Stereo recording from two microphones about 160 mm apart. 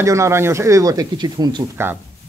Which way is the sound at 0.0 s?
20° right (ahead or behind).